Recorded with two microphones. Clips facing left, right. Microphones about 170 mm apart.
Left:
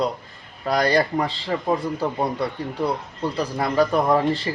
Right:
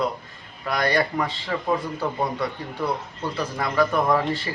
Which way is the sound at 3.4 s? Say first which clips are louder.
Left 2 dB; 30° left (ahead or behind).